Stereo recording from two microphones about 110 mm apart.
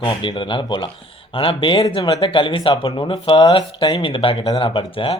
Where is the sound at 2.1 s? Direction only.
35° left (ahead or behind).